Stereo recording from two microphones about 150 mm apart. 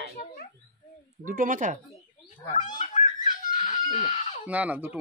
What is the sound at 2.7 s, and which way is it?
Fowl, 55° left (ahead or behind).